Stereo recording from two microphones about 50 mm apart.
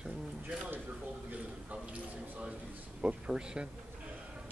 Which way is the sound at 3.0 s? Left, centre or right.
Centre.